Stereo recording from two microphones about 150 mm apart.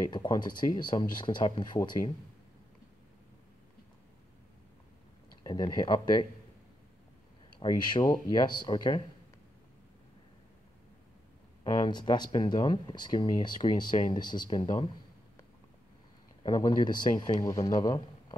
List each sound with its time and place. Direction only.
0.0 s speech: 25° left (ahead or behind)
5.4 s speech: 30° left (ahead or behind)
7.5 s speech: 30° left (ahead or behind)
11.6 s speech: 30° left (ahead or behind)
16.4 s speech: 30° left (ahead or behind)